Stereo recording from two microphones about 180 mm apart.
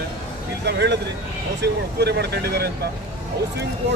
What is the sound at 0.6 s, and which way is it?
Speech, 70° right (ahead or behind).